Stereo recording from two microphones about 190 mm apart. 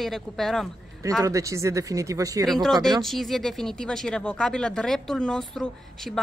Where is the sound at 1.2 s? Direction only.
15° right (ahead or behind).